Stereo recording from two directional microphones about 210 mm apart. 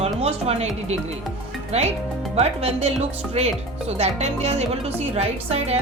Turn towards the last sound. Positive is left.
turn(degrees=-30)  # may be behind; listen again after turning